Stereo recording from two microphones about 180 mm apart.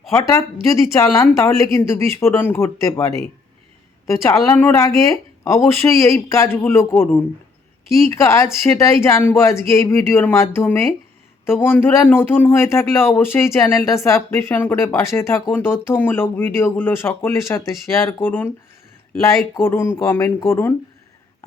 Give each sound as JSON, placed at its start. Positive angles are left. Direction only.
{"t": 0.1, "sound": "speech", "side_deg": 15}
{"t": 19.6, "sound": "speech", "side_deg": 15}